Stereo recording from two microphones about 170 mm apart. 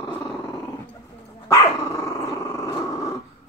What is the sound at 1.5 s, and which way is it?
Dog, 15° left (ahead or behind).